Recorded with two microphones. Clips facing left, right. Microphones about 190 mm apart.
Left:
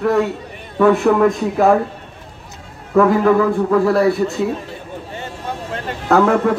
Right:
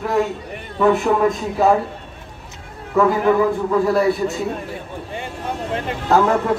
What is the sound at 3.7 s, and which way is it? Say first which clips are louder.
Speech: left 3 dB; 60° left (ahead or behind).